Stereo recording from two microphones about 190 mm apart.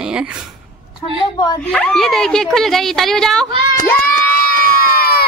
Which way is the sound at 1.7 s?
Centre (ahead or behind).